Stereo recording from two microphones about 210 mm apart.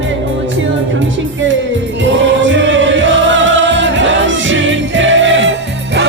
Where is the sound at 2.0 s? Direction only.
60° right (ahead or behind).